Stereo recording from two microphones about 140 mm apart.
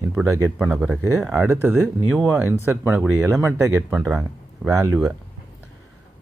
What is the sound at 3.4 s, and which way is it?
Speech, 20° right (ahead or behind).